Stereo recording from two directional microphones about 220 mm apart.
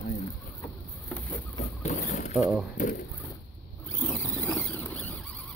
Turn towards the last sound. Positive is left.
turn(degrees=5)  # may be behind; listen again after turning